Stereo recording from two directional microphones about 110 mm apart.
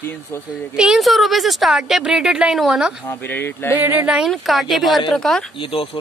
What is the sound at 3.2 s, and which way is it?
Speech, 20° left (ahead or behind).